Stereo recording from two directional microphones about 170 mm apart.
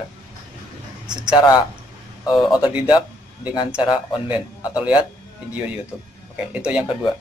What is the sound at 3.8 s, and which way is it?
Speech, 25° left (ahead or behind).